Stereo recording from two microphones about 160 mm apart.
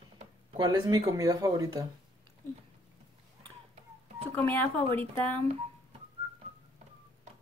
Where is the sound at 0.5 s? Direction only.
25° right (ahead or behind).